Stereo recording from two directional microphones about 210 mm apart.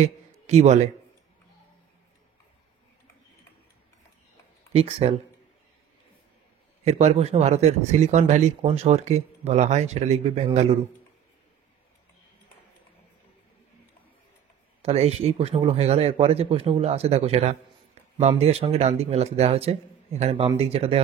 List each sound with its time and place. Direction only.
0.5 s a man's voice: 30° right (ahead or behind)
4.7 s a man's voice: 30° right (ahead or behind)
6.8 s a man's voice: 30° right (ahead or behind)
14.8 s a man's voice: 30° right (ahead or behind)